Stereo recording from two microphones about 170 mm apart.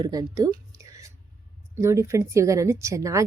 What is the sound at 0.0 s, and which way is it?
Speech, 20° right (ahead or behind).